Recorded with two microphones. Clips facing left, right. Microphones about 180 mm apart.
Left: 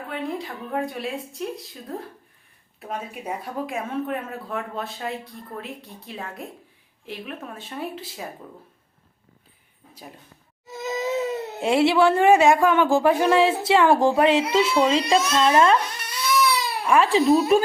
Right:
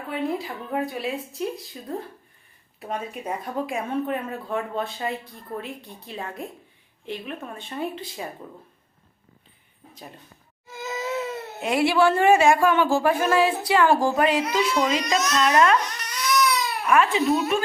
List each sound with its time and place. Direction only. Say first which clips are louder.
0.1 s speech: right 3 dB; 5° right (ahead or behind)
10.7 s crying: left 3 dB; 20° left (ahead or behind)
11.6 s a woman's voice: left 2 dB; 25° left (ahead or behind)
16.6 s baby cry: left 1 dB; 30° left (ahead or behind)